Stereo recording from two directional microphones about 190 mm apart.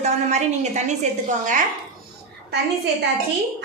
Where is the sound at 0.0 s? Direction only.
35° right (ahead or behind).